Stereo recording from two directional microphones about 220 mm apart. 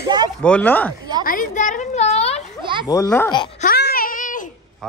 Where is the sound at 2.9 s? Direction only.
10° left (ahead or behind).